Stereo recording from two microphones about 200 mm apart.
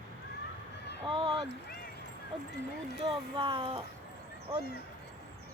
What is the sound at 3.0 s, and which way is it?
Speech, 25° right (ahead or behind).